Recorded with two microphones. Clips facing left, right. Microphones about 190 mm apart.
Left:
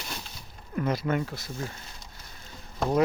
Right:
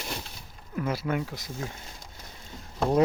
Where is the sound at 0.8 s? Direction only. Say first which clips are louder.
Left 2 dB; 5° right (ahead or behind).